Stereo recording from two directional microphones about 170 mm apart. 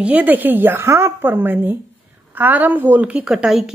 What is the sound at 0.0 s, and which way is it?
A woman's voice, 10° right (ahead or behind).